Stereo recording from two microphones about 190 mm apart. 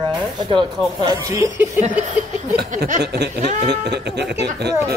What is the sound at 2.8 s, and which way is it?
Speech, 55° right (ahead or behind).